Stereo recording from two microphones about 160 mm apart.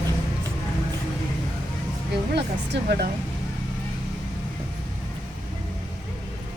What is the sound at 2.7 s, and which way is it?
Speech, 85° right.